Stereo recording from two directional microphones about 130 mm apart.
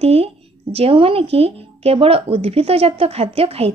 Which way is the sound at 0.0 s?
50° right (ahead or behind).